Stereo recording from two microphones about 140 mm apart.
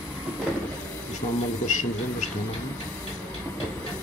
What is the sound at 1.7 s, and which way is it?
Speech, 60° left (ahead or behind).